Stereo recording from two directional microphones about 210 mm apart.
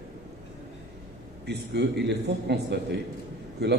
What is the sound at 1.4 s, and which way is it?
A man's voice, 55° right (ahead or behind).